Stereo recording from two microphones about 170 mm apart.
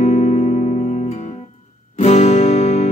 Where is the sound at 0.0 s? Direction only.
40° left (ahead or behind).